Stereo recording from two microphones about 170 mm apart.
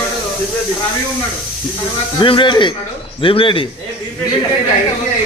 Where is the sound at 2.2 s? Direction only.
30° left (ahead or behind).